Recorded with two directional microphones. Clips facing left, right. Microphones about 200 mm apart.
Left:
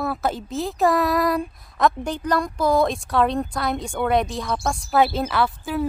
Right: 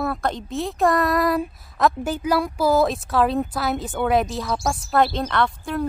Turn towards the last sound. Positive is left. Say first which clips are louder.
# even
turn(degrees=5)  # may be behind; listen again after turning